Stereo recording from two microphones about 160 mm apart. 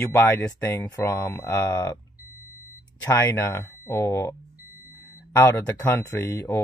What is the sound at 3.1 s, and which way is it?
Speech, 20° left (ahead or behind).